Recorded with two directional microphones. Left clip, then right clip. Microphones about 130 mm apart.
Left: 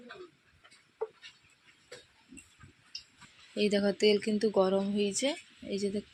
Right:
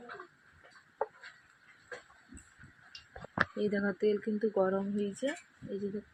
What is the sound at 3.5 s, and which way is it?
Speech, 70° left (ahead or behind).